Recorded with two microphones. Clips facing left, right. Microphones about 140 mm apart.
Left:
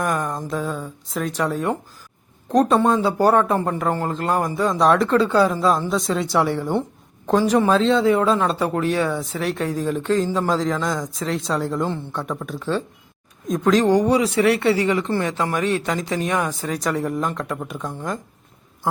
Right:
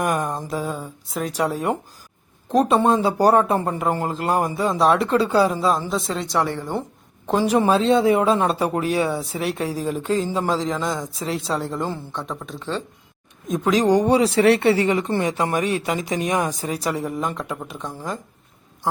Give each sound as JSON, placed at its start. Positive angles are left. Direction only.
{"t": 0.0, "sound": "speech", "side_deg": -10}
{"t": 5.9, "sound": "speech", "side_deg": 0}
{"t": 7.3, "sound": "speech", "side_deg": -10}